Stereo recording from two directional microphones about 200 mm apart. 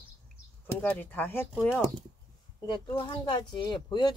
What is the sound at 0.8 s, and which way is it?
Speech, 10° left (ahead or behind).